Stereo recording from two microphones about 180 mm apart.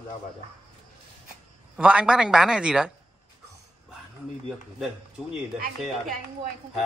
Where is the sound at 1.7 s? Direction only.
5° right (ahead or behind).